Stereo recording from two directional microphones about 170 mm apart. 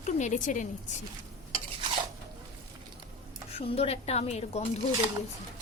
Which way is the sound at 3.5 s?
35° left (ahead or behind).